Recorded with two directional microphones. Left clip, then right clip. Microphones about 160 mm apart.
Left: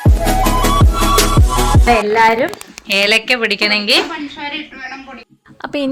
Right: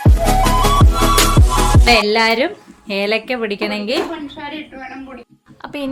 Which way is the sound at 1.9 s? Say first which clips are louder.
Left 2 dB; 25° right (ahead or behind).